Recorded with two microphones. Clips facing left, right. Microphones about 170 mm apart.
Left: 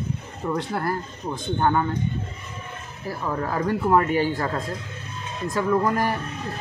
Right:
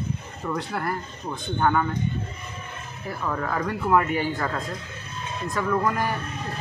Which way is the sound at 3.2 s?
25° left (ahead or behind).